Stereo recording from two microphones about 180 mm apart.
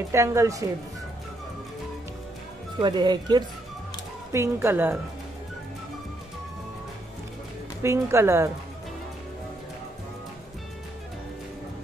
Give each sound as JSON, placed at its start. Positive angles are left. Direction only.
{"t": 0.1, "sound": "speech", "side_deg": -15}
{"t": 2.8, "sound": "speech", "side_deg": -25}
{"t": 7.8, "sound": "speech", "side_deg": -15}